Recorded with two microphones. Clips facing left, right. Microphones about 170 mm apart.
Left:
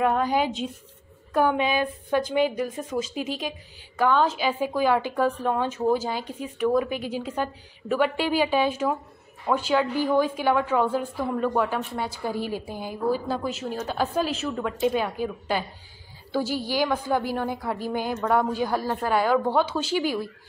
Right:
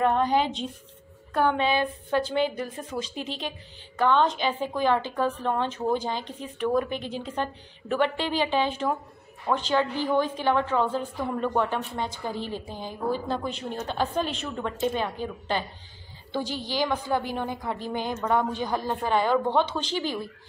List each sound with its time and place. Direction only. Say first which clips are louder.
0.0 s a woman's voice: even; 10° left (ahead or behind)